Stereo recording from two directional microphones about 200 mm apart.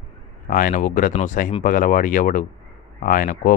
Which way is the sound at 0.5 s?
45° left (ahead or behind).